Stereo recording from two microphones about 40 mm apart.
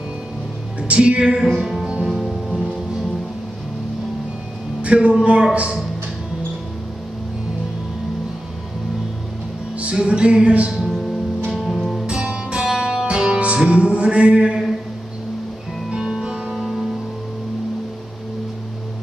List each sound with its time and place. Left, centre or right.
0.8 s music: right
1.4 s music: centre
4.8 s music: right
9.9 s music: right
10.8 s music: centre
12.1 s music: right
15.9 s music: right
16.5 s music: centre